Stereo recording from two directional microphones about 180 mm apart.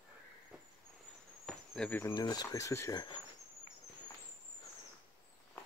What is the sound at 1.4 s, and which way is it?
Cricket, 5° left (ahead or behind).